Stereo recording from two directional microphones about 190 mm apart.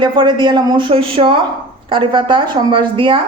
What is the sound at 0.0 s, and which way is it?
Speech, 25° right (ahead or behind).